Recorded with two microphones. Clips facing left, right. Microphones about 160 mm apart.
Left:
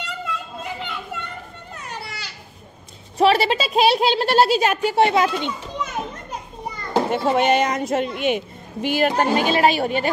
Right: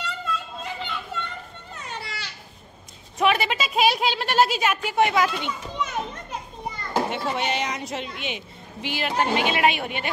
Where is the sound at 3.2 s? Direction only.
35° left (ahead or behind).